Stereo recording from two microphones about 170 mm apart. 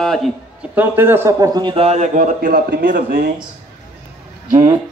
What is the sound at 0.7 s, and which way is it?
A man's voice, 10° right (ahead or behind).